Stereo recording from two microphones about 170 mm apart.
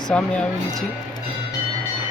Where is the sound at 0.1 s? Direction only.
5° left (ahead or behind).